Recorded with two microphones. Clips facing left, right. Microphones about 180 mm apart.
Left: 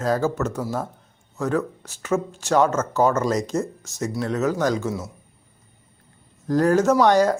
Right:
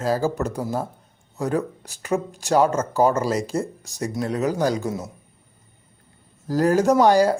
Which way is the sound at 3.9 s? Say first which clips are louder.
Left 1 dB; 35° right (ahead or behind).